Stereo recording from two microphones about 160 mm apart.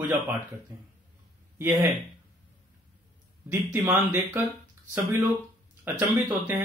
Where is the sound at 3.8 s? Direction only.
15° right (ahead or behind).